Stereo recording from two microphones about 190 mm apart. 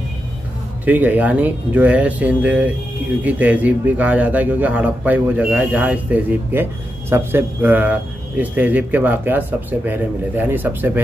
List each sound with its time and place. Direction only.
0.8 s speech: 10° right (ahead or behind)